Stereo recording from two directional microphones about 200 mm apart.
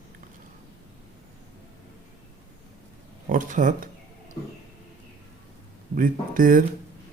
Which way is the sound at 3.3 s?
40° right (ahead or behind).